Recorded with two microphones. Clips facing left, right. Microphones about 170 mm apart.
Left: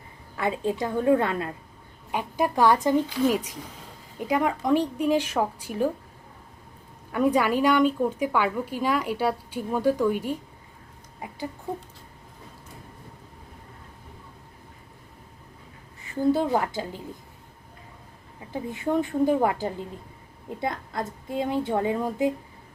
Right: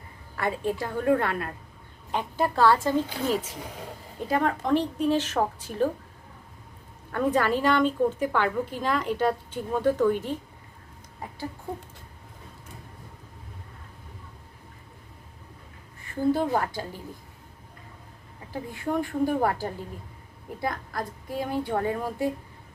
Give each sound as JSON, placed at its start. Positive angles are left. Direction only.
{"t": 0.3, "sound": "a woman's voice", "side_deg": 20}
{"t": 7.1, "sound": "a woman's voice", "side_deg": 10}
{"t": 16.3, "sound": "a woman's voice", "side_deg": 15}
{"t": 18.5, "sound": "a woman's voice", "side_deg": 20}